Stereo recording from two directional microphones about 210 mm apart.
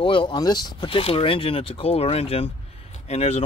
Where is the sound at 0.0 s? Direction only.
25° left (ahead or behind).